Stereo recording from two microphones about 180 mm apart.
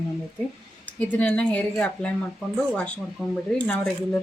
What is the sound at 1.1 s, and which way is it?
A woman's voice, 5° left (ahead or behind).